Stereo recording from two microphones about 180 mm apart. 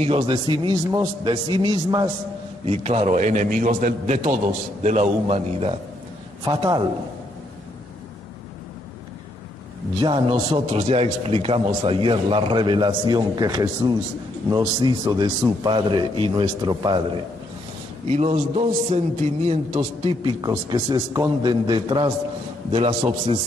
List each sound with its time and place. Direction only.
0.0 s a man's voice: 30° right (ahead or behind)
2.6 s a man's voice: 35° right (ahead or behind)
6.4 s a man's voice: 25° right (ahead or behind)
9.9 s a man's voice: 30° right (ahead or behind)
18.1 s a man's voice: 35° right (ahead or behind)
19.8 s a man's voice: 25° right (ahead or behind)